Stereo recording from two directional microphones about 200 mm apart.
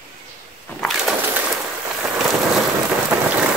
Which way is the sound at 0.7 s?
Centre (ahead or behind).